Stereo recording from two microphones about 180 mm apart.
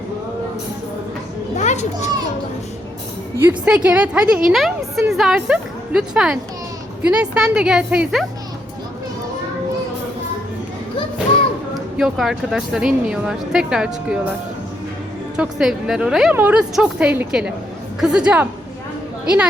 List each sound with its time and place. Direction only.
1.5 s children playing: 40° left (ahead or behind)
3.3 s a woman's voice: 10° right (ahead or behind)
11.9 s a woman's voice: 5° right (ahead or behind)
15.4 s a woman's voice: 5° right (ahead or behind)